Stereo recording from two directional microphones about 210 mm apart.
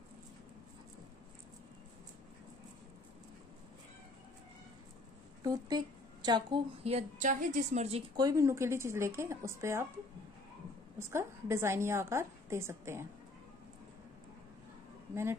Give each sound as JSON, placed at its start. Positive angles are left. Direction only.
{"t": 5.4, "sound": "a woman's voice", "side_deg": -20}
{"t": 8.2, "sound": "a woman's voice", "side_deg": -15}
{"t": 11.0, "sound": "a woman's voice", "side_deg": -15}